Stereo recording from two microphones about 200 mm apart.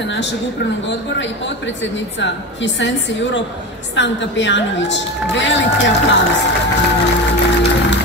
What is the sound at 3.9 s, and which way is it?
A woman's voice, 65° left (ahead or behind).